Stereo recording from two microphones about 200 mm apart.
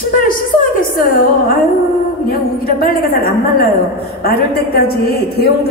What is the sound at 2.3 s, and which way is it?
A woman's voice, 50° left (ahead or behind).